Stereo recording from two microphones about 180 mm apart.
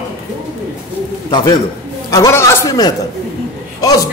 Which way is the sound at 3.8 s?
20° left (ahead or behind).